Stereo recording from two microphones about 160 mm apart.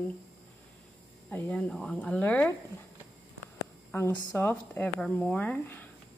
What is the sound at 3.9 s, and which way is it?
A woman's voice, 15° left (ahead or behind).